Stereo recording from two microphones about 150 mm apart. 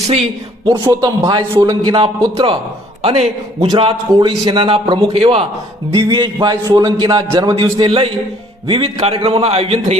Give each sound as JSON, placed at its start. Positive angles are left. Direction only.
{"t": 0.7, "sound": "a man's voice", "side_deg": -20}
{"t": 3.0, "sound": "a man's voice", "side_deg": -40}